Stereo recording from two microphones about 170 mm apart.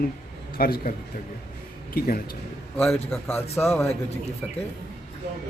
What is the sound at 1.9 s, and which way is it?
Speech, 55° left (ahead or behind).